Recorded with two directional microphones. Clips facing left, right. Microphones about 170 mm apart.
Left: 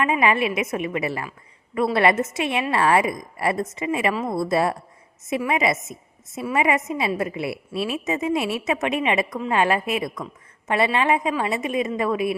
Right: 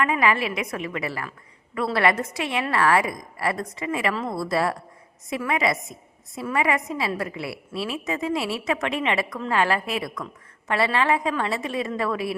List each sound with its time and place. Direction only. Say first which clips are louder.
0.0 s a woman's voice: left 2 dB; 20° left (ahead or behind)